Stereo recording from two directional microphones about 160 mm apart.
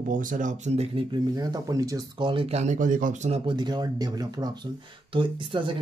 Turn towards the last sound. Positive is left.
turn(degrees=-30)  # may be behind; listen again after turning